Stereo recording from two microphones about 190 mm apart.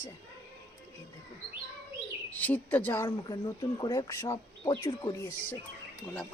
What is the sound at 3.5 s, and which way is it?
Speech, 20° left (ahead or behind).